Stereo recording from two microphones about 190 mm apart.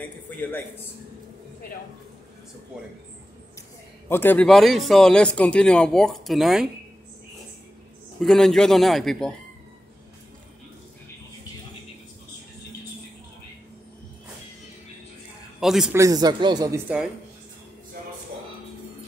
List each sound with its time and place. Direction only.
0.4 s speech: 10° left (ahead or behind)
4.1 s speech: 10° left (ahead or behind)
8.2 s speech: centre (ahead or behind)
15.6 s a man's voice: centre (ahead or behind)
15.9 s speech: 15° right (ahead or behind)